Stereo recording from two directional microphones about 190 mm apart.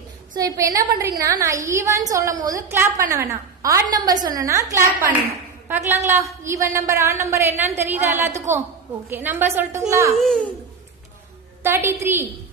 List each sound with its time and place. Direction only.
0.3 s a woman's voice: 15° right (ahead or behind)
10.1 s a child's voice: centre (ahead or behind)
11.6 s a woman's voice: 10° right (ahead or behind)